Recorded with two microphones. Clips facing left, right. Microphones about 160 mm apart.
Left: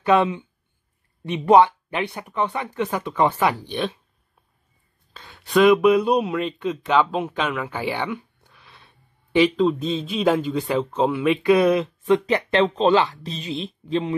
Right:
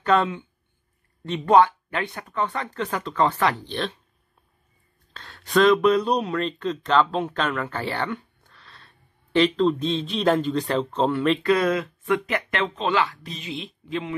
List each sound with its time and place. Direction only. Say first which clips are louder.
0.0 s speech: left 3 dB; 15° left (ahead or behind)
5.1 s speech: left 2 dB; 10° left (ahead or behind)
11.4 s speech: left 4 dB; 15° left (ahead or behind); by 14.1 s 35° left (ahead or behind)